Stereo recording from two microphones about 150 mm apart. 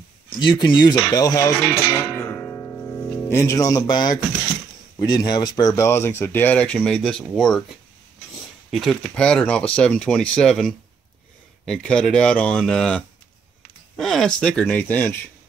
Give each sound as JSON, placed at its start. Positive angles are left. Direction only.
{"t": 0.4, "sound": "speech", "side_deg": 30}
{"t": 2.1, "sound": "music", "side_deg": 15}
{"t": 4.9, "sound": "speech", "side_deg": 25}
{"t": 8.6, "sound": "speech", "side_deg": 0}